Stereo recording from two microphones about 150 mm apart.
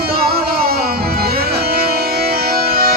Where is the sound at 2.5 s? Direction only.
85° right.